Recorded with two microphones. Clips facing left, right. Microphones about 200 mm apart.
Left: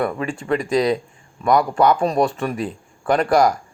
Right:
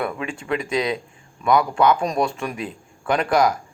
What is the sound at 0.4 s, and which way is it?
Speech, centre (ahead or behind).